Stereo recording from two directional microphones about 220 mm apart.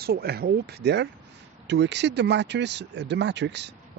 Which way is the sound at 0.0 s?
45° right (ahead or behind).